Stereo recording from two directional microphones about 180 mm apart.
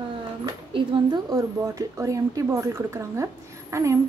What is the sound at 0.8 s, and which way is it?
A woman's voice, 20° right (ahead or behind).